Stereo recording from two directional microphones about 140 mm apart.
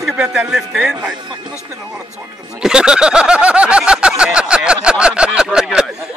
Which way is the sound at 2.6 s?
5° right (ahead or behind).